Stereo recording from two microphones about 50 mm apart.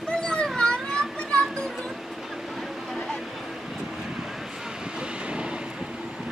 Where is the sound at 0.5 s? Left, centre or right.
Centre.